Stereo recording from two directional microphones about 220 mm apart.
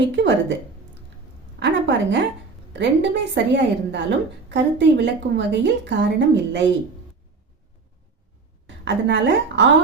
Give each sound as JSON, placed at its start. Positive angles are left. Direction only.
{"t": 0.2, "sound": "a woman's voice", "side_deg": -55}
{"t": 1.5, "sound": "a woman's voice", "side_deg": -55}
{"t": 8.6, "sound": "a woman's voice", "side_deg": -55}